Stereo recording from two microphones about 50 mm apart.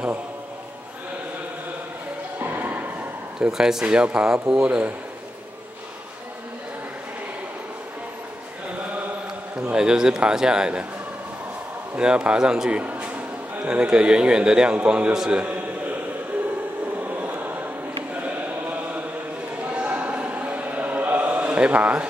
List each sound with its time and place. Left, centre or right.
2.3 s music: right
3.3 s a man's voice: centre
9.8 s a man's voice: centre
11.9 s a man's voice: centre
17.1 s a sound: right
19.6 s a sound: right